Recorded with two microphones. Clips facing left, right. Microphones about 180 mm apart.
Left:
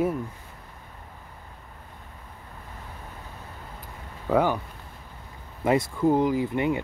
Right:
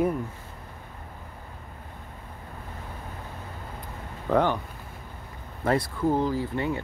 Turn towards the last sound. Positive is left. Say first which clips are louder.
# left 3 dB
turn(degrees=15)  # may be behind; listen again after turning